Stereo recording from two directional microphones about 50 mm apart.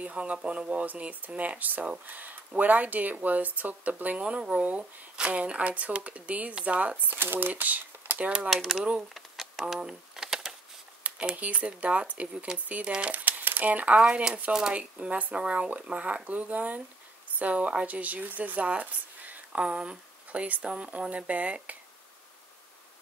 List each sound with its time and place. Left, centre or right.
0.0 s speech: right
7.1 s speech: right
8.7 s speech: centre
9.1 s a sound: centre
11.1 s speech: right
19.6 s speech: centre
20.2 s speech: right